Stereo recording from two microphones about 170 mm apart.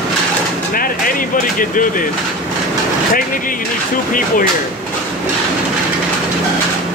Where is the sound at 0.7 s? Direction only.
55° left (ahead or behind).